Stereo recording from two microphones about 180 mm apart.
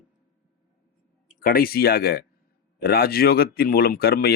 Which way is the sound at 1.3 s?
50° left (ahead or behind).